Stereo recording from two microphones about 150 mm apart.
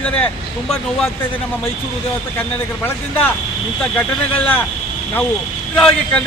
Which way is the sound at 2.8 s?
15° left (ahead or behind).